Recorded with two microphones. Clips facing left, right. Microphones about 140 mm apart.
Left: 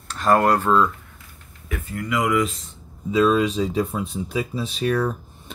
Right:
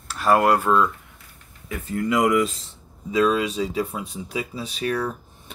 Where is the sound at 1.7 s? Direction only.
25° right (ahead or behind).